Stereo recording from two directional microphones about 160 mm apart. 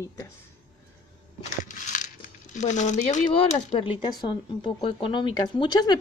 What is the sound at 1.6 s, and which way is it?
Crumpling, 55° left (ahead or behind).